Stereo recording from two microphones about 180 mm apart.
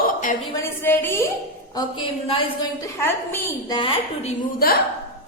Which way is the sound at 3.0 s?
15° left (ahead or behind).